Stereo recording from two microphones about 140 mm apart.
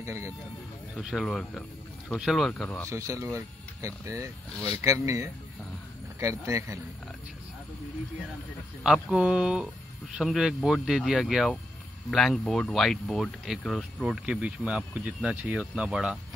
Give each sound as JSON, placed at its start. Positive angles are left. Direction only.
{"t": 0.0, "sound": "speech", "side_deg": -20}
{"t": 0.9, "sound": "speech", "side_deg": 0}
{"t": 2.9, "sound": "speech", "side_deg": -20}
{"t": 8.8, "sound": "speech", "side_deg": -5}